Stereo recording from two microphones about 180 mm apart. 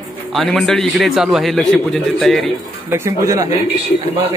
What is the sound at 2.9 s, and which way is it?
Speech, 15° right (ahead or behind).